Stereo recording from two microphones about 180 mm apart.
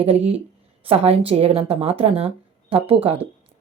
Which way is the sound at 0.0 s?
35° right (ahead or behind).